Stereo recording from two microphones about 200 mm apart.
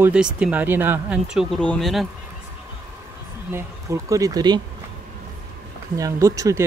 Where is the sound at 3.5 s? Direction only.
15° right (ahead or behind).